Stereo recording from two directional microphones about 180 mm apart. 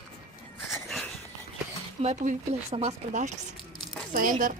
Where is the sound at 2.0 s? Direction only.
40° right (ahead or behind).